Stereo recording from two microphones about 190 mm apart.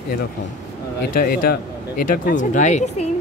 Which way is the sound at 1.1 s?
50° left (ahead or behind).